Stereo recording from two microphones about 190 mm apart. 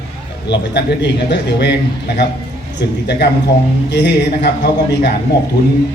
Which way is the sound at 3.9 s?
60° left (ahead or behind).